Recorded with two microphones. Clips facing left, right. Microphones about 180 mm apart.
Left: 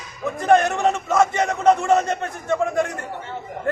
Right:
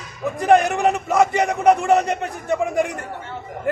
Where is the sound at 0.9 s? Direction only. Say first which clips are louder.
Right 1 dB; 15° right (ahead or behind).